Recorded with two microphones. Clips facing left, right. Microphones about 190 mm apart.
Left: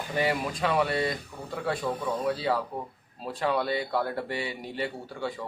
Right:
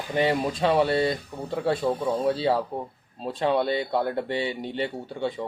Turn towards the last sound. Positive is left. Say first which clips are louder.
# right 5 dB
turn(degrees=-25)  # may be behind; listen again after turning